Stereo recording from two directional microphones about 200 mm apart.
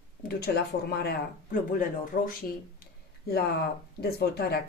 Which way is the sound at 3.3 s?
55° left (ahead or behind).